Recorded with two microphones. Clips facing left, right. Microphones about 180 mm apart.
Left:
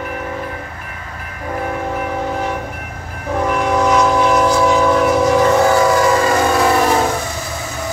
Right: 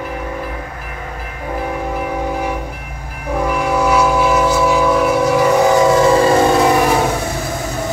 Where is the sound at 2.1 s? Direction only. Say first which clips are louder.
Right 1 dB; 10° right (ahead or behind).